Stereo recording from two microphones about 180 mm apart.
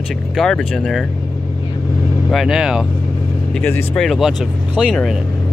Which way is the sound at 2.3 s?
Centre (ahead or behind).